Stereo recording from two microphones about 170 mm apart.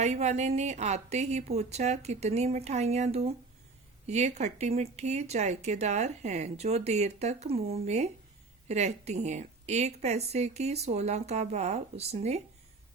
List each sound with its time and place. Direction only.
0.0 s speech: 40° right (ahead or behind)